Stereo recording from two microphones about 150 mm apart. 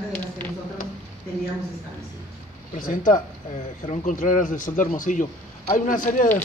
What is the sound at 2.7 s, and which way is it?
Speech, 65° left (ahead or behind).